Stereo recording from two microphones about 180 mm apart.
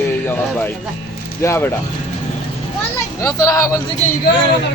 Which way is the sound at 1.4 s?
15° left (ahead or behind).